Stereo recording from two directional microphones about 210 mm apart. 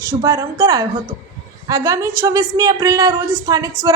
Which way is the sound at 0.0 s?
15° right (ahead or behind).